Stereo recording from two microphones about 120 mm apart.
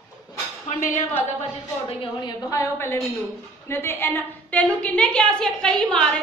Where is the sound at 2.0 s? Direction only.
35° left (ahead or behind).